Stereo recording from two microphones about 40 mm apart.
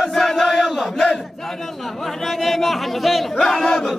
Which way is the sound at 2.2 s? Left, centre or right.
Centre.